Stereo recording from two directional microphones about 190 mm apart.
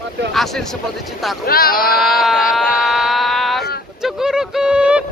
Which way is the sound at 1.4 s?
50° left (ahead or behind).